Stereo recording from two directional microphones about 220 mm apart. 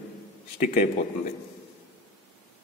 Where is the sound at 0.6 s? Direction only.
35° left (ahead or behind).